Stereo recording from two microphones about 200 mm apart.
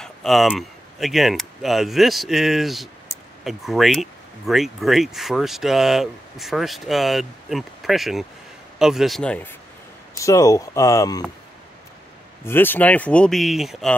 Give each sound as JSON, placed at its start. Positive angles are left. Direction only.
{"t": 0.0, "sound": "speech", "side_deg": 0}
{"t": 12.4, "sound": "speech", "side_deg": 10}